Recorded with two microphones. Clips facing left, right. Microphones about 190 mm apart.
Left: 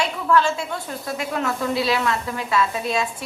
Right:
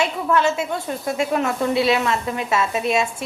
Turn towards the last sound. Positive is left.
turn(degrees=-25)  # may be behind; listen again after turning